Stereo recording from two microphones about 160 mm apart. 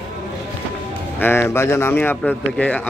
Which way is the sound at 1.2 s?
15° left (ahead or behind).